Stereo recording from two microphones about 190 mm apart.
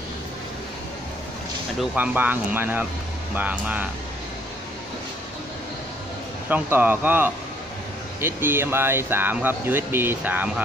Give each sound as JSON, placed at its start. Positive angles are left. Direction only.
{"t": 1.8, "sound": "speech", "side_deg": -10}
{"t": 6.5, "sound": "speech", "side_deg": -10}